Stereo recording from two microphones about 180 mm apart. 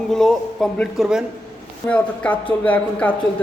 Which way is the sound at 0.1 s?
5° left (ahead or behind).